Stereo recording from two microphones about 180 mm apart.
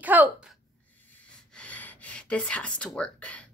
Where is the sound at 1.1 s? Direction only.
10° left (ahead or behind).